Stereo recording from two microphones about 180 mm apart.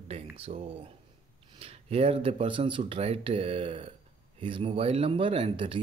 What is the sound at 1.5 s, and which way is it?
Speech, 35° right (ahead or behind).